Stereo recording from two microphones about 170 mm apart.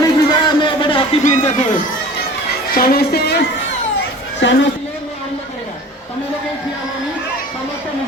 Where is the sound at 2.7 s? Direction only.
60° left (ahead or behind).